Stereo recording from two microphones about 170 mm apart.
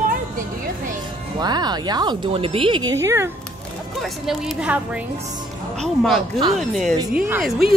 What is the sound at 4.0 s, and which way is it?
A woman's voice, centre (ahead or behind).